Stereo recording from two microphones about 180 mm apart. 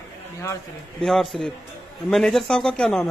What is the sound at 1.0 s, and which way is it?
Speech, centre (ahead or behind).